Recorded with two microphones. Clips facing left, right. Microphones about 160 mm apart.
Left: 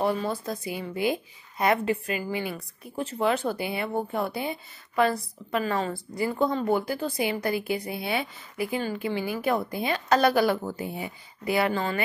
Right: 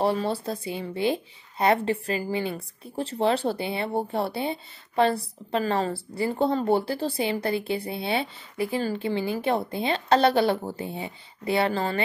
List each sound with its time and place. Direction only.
0.0 s speech: 35° right (ahead or behind)